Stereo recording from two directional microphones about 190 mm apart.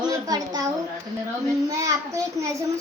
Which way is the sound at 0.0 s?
20° right (ahead or behind).